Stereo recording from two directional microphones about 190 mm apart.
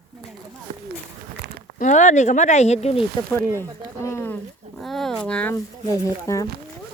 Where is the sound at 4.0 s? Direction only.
15° left (ahead or behind).